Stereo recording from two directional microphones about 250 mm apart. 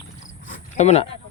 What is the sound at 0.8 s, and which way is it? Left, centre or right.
Speech, left.